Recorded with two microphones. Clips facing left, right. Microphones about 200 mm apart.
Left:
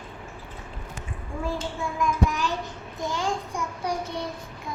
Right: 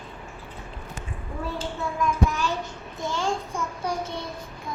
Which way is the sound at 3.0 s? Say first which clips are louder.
Right 1 dB; 15° left (ahead or behind).